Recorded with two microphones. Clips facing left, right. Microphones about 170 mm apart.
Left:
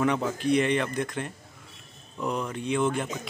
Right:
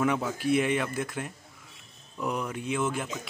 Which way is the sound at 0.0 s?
5° right (ahead or behind).